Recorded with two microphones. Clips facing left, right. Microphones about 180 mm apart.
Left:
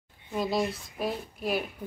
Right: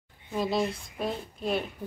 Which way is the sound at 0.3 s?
Centre (ahead or behind).